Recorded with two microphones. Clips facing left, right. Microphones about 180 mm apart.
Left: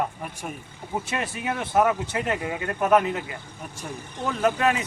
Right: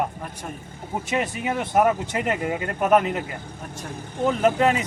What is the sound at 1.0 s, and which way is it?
Speech, 15° right (ahead or behind).